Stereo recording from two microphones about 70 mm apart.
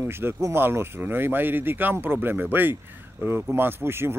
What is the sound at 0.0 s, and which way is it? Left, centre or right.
A man's voice, right.